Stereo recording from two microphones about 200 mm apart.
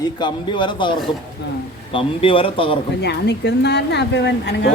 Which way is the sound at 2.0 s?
25° left (ahead or behind).